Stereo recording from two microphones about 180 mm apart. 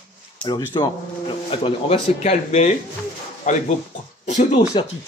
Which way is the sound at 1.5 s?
30° left (ahead or behind).